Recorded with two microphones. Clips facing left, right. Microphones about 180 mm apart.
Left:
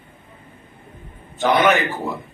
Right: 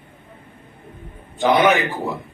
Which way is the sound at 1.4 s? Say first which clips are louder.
Right 1 dB; 15° right (ahead or behind).